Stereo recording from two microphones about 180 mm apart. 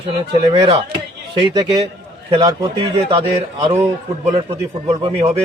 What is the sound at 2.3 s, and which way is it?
Speech, 25° right (ahead or behind).